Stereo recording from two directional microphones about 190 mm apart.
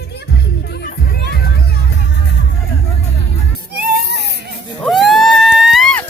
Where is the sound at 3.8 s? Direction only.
60° right (ahead or behind).